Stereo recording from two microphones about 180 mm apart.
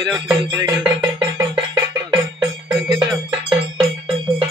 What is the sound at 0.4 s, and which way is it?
Music, 20° right (ahead or behind).